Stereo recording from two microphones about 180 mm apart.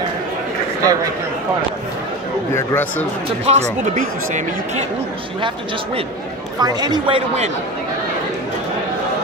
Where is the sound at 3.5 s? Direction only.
40° right (ahead or behind).